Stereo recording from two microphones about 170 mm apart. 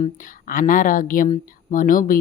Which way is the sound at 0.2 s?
55° left (ahead or behind).